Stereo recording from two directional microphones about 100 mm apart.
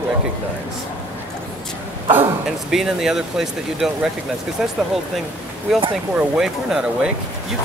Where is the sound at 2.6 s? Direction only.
5° right (ahead or behind).